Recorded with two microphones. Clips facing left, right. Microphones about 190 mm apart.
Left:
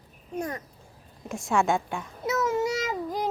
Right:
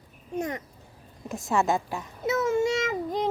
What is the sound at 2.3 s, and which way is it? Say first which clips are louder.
Child singing: right 2 dB; 25° right (ahead or behind).